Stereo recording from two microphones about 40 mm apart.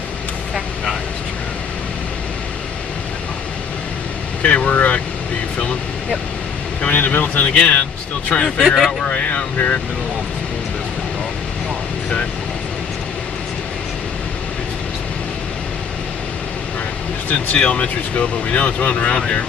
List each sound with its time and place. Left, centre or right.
4.4 s speech: left
6.9 s speech: left
7.5 s speech: left
8.4 s speech: left
8.6 s speech: centre
9.0 s speech: left
17.6 s speech: left